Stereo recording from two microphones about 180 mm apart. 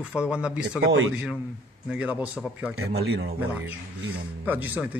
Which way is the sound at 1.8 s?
5° right (ahead or behind).